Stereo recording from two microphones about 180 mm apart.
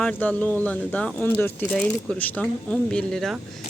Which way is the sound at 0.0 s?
10° left (ahead or behind).